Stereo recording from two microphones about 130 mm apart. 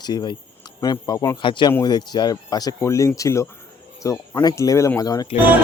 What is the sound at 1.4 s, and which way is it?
Speech, 40° left (ahead or behind).